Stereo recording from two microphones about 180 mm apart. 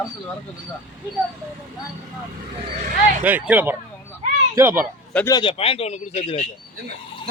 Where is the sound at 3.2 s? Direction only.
10° right (ahead or behind).